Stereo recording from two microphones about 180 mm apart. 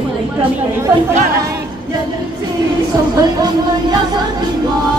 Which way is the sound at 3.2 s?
25° right (ahead or behind).